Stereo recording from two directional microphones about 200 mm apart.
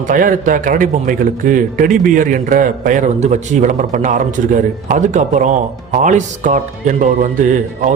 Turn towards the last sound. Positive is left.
turn(degrees=-40)  # may be behind; listen again after turning